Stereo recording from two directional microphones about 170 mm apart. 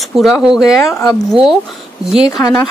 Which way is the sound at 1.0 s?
Centre (ahead or behind).